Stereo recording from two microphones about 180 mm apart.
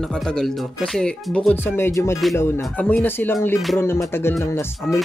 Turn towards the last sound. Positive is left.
turn(degrees=15)  # may be behind; listen again after turning